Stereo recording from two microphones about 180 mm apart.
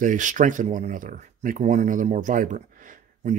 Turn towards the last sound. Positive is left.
turn(degrees=-45)  # may be behind; listen again after turning